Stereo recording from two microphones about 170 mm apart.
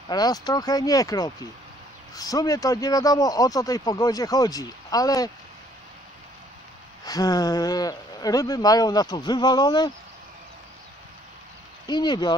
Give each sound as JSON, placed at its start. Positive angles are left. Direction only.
{"t": 0.1, "sound": "speech", "side_deg": 25}
{"t": 7.1, "sound": "speech", "side_deg": 20}
{"t": 11.8, "sound": "speech", "side_deg": 25}